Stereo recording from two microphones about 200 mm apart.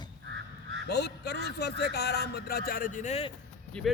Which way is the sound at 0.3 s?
60° right (ahead or behind).